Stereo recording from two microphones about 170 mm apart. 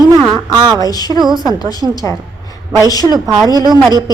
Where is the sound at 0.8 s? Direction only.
20° left (ahead or behind).